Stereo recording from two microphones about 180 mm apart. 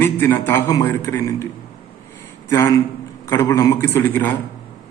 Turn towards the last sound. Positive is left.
turn(degrees=10)  # may be behind; listen again after turning